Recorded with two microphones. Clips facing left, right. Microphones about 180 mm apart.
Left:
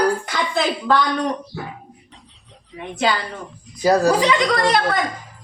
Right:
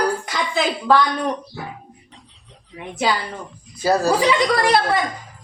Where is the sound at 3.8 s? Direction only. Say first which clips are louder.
Left 3 dB; 15° left (ahead or behind).